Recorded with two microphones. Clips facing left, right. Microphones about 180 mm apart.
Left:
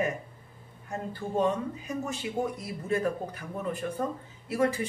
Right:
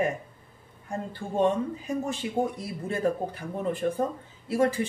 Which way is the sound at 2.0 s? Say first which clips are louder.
Right 2 dB; 30° right (ahead or behind).